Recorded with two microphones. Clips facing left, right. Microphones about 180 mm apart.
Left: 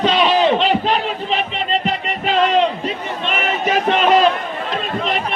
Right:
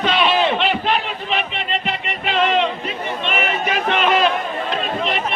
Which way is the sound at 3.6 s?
40° left (ahead or behind).